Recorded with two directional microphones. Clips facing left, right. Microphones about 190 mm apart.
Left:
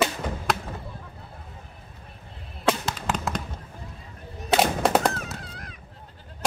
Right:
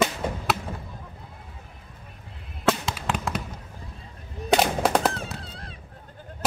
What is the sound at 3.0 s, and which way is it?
Fireworks, 5° right (ahead or behind).